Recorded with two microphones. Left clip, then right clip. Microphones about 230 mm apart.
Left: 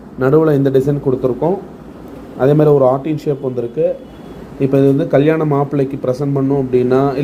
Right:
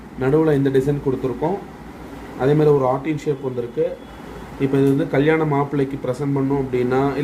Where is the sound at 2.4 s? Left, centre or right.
Centre.